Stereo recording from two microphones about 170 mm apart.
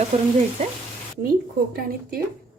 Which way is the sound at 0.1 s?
40° right (ahead or behind).